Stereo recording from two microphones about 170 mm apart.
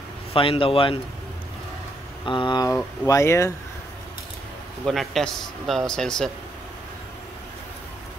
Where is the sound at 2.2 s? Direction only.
30° left (ahead or behind).